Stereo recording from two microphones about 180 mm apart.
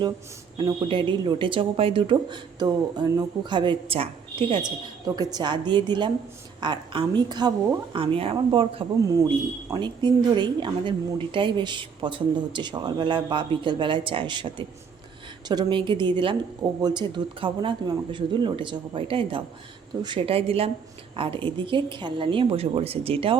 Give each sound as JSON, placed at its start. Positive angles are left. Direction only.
{"t": 0.5, "sound": "a woman's voice", "side_deg": -25}